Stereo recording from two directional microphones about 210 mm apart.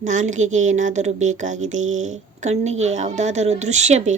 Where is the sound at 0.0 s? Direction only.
35° right (ahead or behind).